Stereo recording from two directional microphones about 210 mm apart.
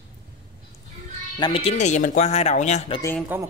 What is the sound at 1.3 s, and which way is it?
Speech, 25° left (ahead or behind).